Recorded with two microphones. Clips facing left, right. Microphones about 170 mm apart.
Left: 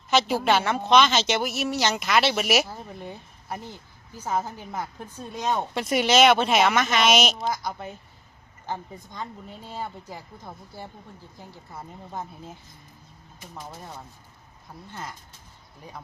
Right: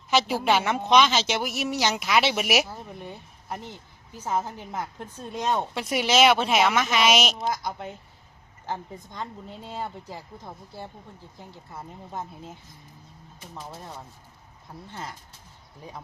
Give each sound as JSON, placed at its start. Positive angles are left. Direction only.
{"t": 0.1, "sound": "a woman's voice", "side_deg": -10}
{"t": 2.6, "sound": "speech", "side_deg": 10}
{"t": 3.6, "sound": "speech", "side_deg": -20}
{"t": 5.4, "sound": "a woman's voice", "side_deg": 5}
{"t": 7.5, "sound": "speech", "side_deg": -20}
{"t": 9.5, "sound": "speech", "side_deg": -25}
{"t": 13.6, "sound": "a woman's voice", "side_deg": 0}